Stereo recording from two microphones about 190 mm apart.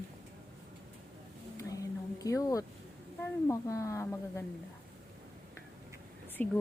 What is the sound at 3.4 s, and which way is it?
A woman's voice, 15° left (ahead or behind).